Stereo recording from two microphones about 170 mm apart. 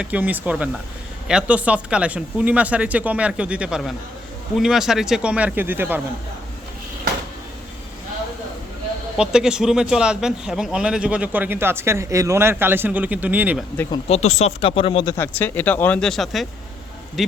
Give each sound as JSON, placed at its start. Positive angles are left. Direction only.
{"t": 0.0, "sound": "speech", "side_deg": -10}
{"t": 9.1, "sound": "speech", "side_deg": -5}
{"t": 14.1, "sound": "speech", "side_deg": 40}
{"t": 15.1, "sound": "a man's voice", "side_deg": 10}